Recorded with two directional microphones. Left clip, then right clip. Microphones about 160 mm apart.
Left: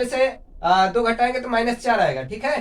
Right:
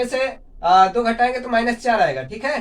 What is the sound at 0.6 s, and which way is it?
Speech, 25° left (ahead or behind).